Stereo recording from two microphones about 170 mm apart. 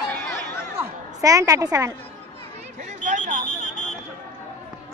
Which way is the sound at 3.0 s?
45° right (ahead or behind).